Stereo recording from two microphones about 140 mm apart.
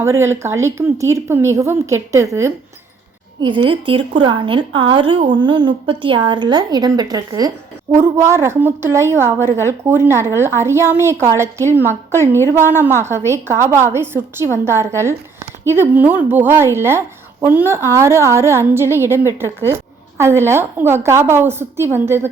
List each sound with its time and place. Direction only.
0.0 s speech: 20° right (ahead or behind)
3.4 s a woman's voice: 35° right (ahead or behind); by 22.3 s 15° right (ahead or behind)